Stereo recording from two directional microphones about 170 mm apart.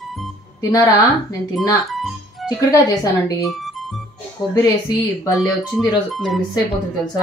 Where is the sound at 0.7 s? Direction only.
20° left (ahead or behind).